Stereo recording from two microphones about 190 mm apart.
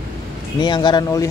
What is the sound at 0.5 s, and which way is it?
Speech, 25° left (ahead or behind).